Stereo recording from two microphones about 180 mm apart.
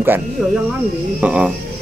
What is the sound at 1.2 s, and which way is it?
Speech, 5° right (ahead or behind).